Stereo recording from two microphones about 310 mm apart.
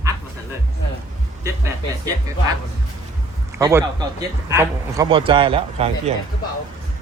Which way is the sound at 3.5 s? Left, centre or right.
Centre.